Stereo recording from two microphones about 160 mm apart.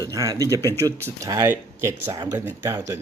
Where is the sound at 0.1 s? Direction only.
20° right (ahead or behind).